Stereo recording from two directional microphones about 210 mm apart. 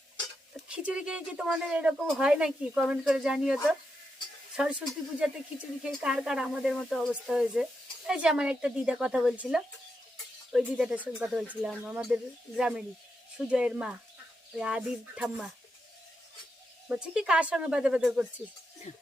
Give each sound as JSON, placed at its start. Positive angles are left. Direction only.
{"t": 0.7, "sound": "speech", "side_deg": -5}
{"t": 16.9, "sound": "speech", "side_deg": -5}
{"t": 18.9, "sound": "stir", "side_deg": 35}